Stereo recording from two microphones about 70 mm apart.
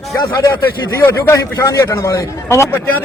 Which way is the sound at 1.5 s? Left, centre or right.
Left.